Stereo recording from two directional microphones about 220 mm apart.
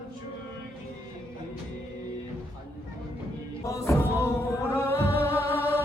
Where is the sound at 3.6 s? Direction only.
15° left (ahead or behind).